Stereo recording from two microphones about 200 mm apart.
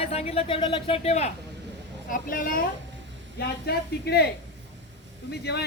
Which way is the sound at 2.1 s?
45° left (ahead or behind).